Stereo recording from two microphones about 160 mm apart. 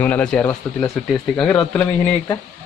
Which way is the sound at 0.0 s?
10° left (ahead or behind).